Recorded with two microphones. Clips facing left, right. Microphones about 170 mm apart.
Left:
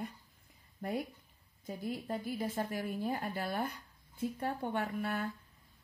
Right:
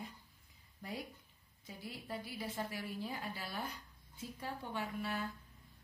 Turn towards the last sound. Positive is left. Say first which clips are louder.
# left 4 dB
turn(degrees=55)  # may be behind; listen again after turning